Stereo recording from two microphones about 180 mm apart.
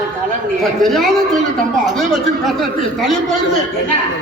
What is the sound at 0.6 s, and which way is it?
Speech, centre (ahead or behind).